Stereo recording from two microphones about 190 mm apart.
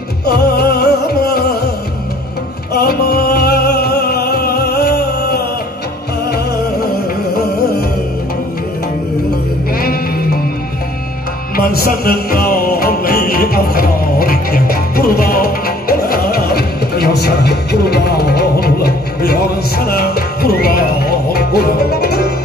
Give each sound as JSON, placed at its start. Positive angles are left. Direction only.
{"t": 0.3, "sound": "music", "side_deg": 55}
{"t": 2.7, "sound": "music", "side_deg": 55}
{"t": 9.8, "sound": "music", "side_deg": 50}
{"t": 11.5, "sound": "music", "side_deg": 50}